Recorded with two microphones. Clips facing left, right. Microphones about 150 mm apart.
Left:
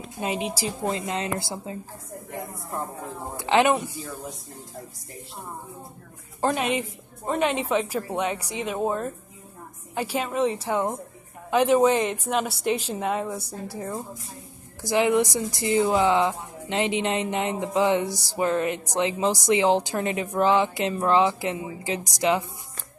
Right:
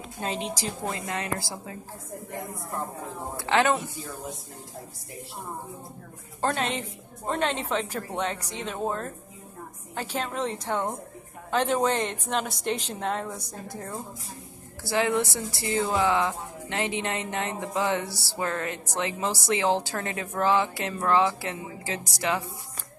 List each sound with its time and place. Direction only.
0.2 s a woman's voice: 10° left (ahead or behind)
0.9 s a woman's voice: 25° left (ahead or behind)
3.3 s a woman's voice: 15° left (ahead or behind)
6.4 s a woman's voice: 10° left (ahead or behind)
14.8 s a woman's voice: 15° left (ahead or behind)